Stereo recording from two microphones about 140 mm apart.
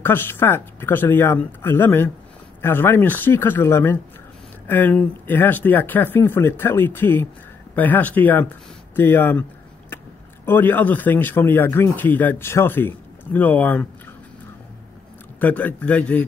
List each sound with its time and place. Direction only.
0.0 s a man's voice: 15° left (ahead or behind)
8.9 s a sound: 15° left (ahead or behind)
10.4 s a man's voice: 15° left (ahead or behind)
15.4 s a man's voice: 10° left (ahead or behind)